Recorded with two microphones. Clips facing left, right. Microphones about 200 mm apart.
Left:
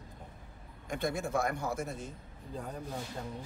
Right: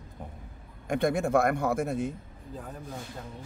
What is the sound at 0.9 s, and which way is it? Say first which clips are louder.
A man's voice: right 8 dB; 55° right (ahead or behind).